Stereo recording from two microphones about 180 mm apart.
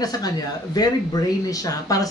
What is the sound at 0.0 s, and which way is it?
Speech, 20° left (ahead or behind).